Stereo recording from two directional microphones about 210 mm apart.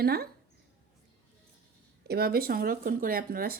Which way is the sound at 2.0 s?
50° right (ahead or behind).